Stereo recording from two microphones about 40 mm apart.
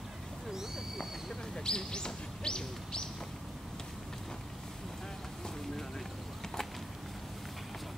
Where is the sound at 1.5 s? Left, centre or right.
Centre.